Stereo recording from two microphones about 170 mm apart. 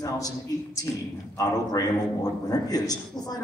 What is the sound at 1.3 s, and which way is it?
A man's voice, 20° left (ahead or behind).